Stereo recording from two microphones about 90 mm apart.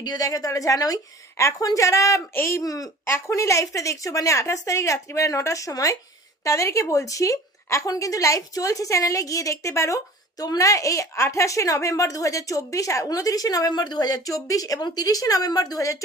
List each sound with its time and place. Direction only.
0.0 s speech: 45° left (ahead or behind)